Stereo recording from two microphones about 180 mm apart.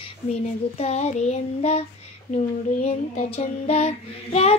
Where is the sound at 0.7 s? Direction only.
35° left (ahead or behind).